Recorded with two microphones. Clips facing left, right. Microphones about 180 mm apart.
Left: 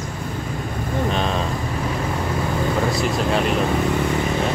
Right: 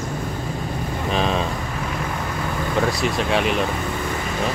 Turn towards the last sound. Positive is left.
turn(degrees=0)  # may be behind; listen again after turning